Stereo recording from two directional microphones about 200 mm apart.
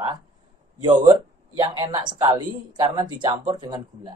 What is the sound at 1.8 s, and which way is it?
A man's voice, 25° right (ahead or behind).